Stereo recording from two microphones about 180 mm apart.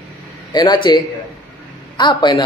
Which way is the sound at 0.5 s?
25° left (ahead or behind).